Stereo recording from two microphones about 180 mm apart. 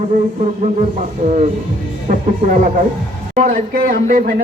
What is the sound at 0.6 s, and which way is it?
Speech, 40° right (ahead or behind).